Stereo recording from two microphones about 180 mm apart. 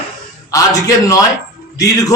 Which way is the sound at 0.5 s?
20° left (ahead or behind).